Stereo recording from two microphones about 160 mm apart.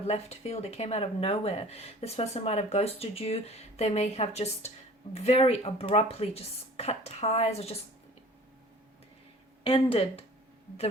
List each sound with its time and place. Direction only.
0.1 s speech: 40° left (ahead or behind)
9.6 s speech: 35° left (ahead or behind)